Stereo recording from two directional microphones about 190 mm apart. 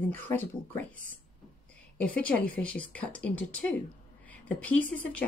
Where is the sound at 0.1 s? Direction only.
10° left (ahead or behind).